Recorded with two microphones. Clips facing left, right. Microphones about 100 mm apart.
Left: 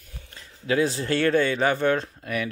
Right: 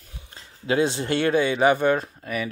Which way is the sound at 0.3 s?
25° right (ahead or behind).